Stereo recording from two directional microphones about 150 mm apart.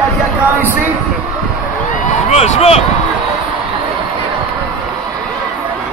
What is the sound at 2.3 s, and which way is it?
Speech, 45° left (ahead or behind).